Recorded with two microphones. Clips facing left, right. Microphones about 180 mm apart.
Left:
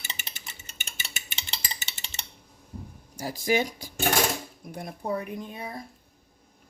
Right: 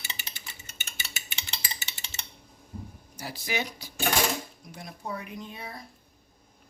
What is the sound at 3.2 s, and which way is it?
Speech, 45° left (ahead or behind).